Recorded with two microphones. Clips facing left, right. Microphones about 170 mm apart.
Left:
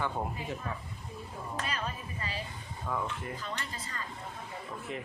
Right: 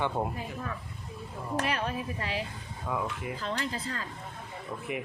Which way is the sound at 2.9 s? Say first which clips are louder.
Right 2 dB; 10° right (ahead or behind).